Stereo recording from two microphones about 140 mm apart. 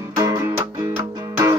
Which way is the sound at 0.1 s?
20° right (ahead or behind).